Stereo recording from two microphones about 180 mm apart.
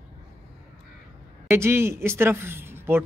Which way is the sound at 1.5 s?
15° right (ahead or behind).